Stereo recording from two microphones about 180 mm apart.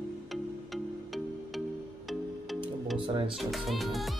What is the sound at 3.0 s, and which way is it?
Music, 30° right (ahead or behind).